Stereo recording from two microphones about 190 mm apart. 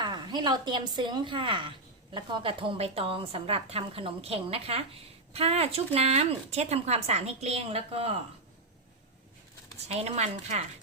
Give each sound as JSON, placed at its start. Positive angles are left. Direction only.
{"t": 0.0, "sound": "a woman's voice", "side_deg": -20}
{"t": 9.7, "sound": "speech", "side_deg": -35}